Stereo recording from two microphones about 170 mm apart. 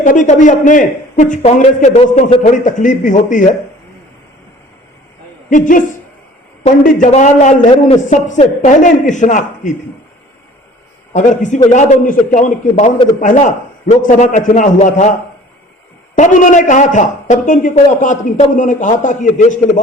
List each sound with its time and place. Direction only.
0.0 s a man's voice: 50° left (ahead or behind)
5.5 s a man's voice: 50° left (ahead or behind)
11.1 s a man's voice: 50° left (ahead or behind)
16.1 s a man's voice: 50° left (ahead or behind)